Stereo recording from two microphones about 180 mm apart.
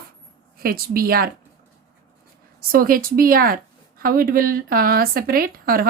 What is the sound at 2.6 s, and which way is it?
Speech, 55° right (ahead or behind).